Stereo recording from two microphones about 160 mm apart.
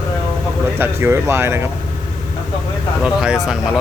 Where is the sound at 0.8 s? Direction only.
15° right (ahead or behind).